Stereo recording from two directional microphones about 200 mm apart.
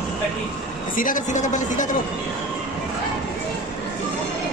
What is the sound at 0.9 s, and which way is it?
A man's voice, 40° left (ahead or behind).